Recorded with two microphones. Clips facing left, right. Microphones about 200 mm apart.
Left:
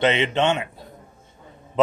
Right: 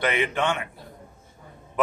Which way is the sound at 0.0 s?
25° left (ahead or behind).